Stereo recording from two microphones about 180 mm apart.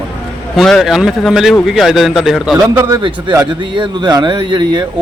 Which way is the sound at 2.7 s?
15° right (ahead or behind).